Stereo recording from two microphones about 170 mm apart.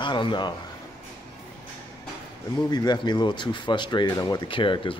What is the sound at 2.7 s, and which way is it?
Speech, 25° left (ahead or behind).